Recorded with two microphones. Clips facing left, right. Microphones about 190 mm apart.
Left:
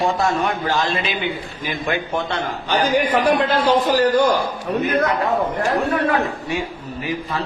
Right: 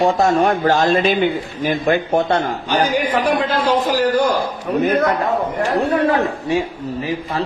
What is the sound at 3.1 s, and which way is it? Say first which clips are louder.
Speech: even; 10° left (ahead or behind).